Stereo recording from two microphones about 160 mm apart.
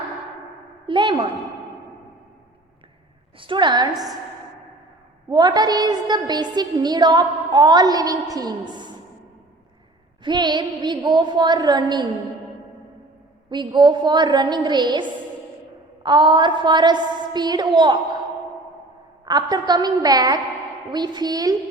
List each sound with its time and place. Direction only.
0.9 s a sound: 30° right (ahead or behind)
3.3 s a woman's voice: 30° right (ahead or behind)
5.3 s a woman's voice: 25° right (ahead or behind)
10.2 s a woman's voice: 30° right (ahead or behind)
13.5 s a woman's voice: 30° right (ahead or behind)
16.0 s a woman's voice: 30° right (ahead or behind)
19.2 s a woman's voice: 25° right (ahead or behind)